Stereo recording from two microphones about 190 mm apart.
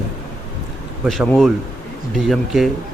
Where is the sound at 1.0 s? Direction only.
Centre (ahead or behind).